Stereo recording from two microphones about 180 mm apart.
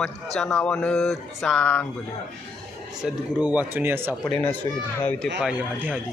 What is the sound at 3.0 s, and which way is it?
Speech, 5° right (ahead or behind).